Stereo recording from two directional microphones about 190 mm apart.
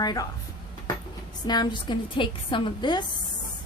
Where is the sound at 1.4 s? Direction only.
20° left (ahead or behind).